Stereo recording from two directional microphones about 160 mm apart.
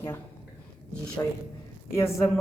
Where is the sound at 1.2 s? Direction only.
25° left (ahead or behind).